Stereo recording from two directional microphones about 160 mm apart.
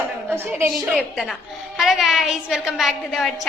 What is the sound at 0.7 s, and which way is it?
A woman's voice, centre (ahead or behind).